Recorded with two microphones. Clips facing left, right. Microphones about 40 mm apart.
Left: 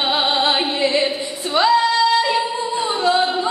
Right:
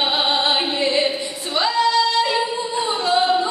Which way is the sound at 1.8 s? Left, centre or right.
Left.